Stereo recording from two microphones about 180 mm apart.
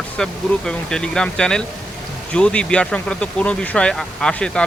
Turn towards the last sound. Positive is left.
turn(degrees=5)  # may be behind; listen again after turning